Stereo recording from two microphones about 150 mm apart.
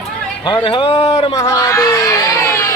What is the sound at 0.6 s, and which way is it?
Speech, 40° left (ahead or behind).